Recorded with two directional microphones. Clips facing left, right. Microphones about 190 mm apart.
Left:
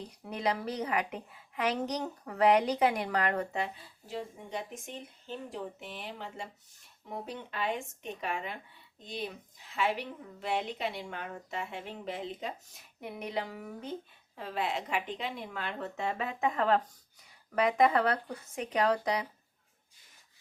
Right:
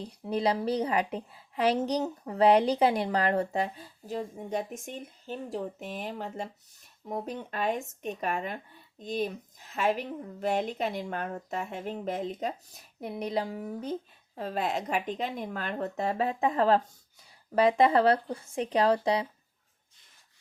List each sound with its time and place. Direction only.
0.3 s a woman's voice: 30° right (ahead or behind)